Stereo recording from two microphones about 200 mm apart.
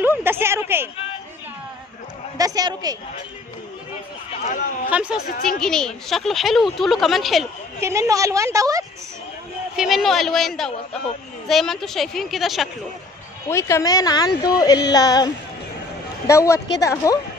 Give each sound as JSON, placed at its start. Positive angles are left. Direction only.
{"t": 0.0, "sound": "a sound", "side_deg": -10}
{"t": 2.3, "sound": "speech", "side_deg": -20}
{"t": 4.5, "sound": "speech", "side_deg": 40}
{"t": 4.9, "sound": "speech", "side_deg": -5}
{"t": 7.8, "sound": "a woman's voice", "side_deg": -15}
{"t": 9.8, "sound": "speech", "side_deg": 0}
{"t": 13.5, "sound": "a woman's voice", "side_deg": 15}
{"t": 16.3, "sound": "a woman's voice", "side_deg": 15}
{"t": 16.5, "sound": "a woman's voice", "side_deg": 60}
{"t": 16.8, "sound": "a woman's voice", "side_deg": 15}